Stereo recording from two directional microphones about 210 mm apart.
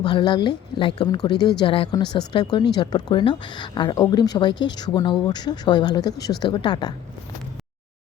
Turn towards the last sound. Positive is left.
turn(degrees=20)  # may be behind; listen again after turning